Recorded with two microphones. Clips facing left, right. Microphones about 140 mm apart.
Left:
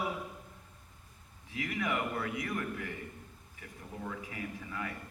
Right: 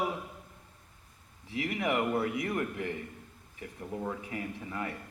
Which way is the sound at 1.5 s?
25° right (ahead or behind).